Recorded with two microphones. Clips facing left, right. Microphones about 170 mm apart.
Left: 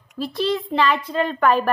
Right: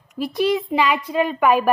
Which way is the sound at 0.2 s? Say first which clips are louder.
Right 3 dB; 15° right (ahead or behind).